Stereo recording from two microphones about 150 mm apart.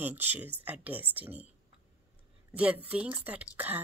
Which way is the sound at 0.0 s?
15° right (ahead or behind).